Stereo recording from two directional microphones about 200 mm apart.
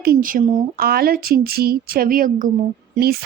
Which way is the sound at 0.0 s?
45° right (ahead or behind).